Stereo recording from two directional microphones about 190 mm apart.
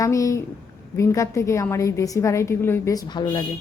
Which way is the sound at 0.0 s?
15° left (ahead or behind).